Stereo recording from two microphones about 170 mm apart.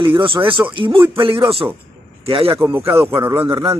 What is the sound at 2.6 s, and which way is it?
A man's voice, 15° right (ahead or behind).